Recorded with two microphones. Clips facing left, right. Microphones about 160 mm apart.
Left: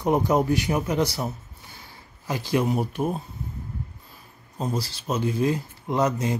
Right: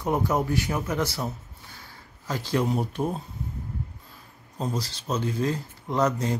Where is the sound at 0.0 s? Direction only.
15° left (ahead or behind).